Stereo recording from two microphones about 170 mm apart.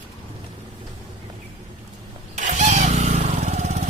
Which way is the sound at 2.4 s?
45° right (ahead or behind).